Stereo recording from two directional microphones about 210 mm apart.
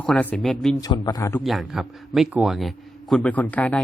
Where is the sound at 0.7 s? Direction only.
20° left (ahead or behind).